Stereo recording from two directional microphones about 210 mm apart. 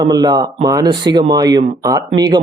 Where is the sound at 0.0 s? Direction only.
20° right (ahead or behind).